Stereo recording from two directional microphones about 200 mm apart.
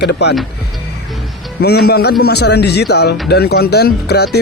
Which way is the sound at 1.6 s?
55° left (ahead or behind).